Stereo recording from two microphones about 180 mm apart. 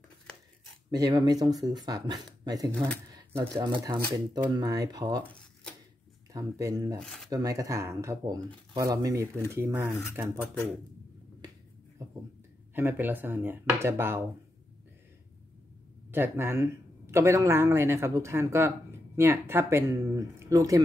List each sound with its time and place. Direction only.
0.9 s speech: 20° right (ahead or behind)
5.2 s a sound: 5° left (ahead or behind)
6.3 s speech: 20° right (ahead or behind)
7.0 s speech: centre (ahead or behind)
7.2 s speech: 20° right (ahead or behind)
12.7 s speech: 10° right (ahead or behind)
16.1 s speech: 10° right (ahead or behind)